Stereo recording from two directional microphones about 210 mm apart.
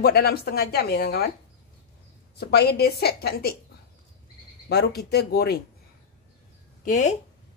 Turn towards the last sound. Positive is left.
turn(degrees=35)  # may be behind; listen again after turning